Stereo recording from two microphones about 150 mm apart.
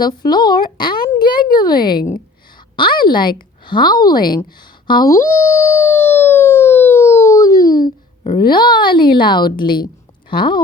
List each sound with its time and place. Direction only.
0.0 s speech: 30° left (ahead or behind)
1.7 s speech: 80° left
2.7 s a woman's voice: 30° left (ahead or behind)
4.9 s siren: 25° left (ahead or behind)
9.1 s a woman's voice: 30° left (ahead or behind)